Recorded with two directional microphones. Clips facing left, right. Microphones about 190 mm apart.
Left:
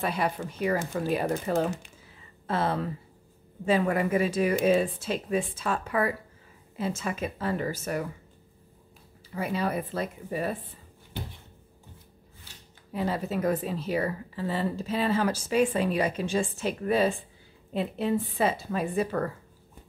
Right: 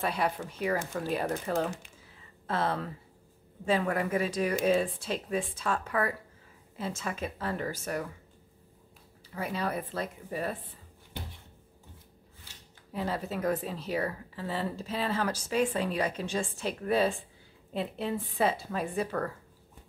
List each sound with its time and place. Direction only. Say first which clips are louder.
0.0 s a woman's voice: left 2 dB; centre (ahead or behind)
9.3 s speech: left 4 dB; 5° left (ahead or behind)
12.9 s a woman's voice: left 4 dB; 5° left (ahead or behind)